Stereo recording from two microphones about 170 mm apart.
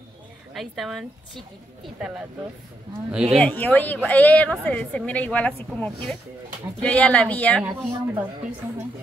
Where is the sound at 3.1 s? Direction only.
5° right (ahead or behind).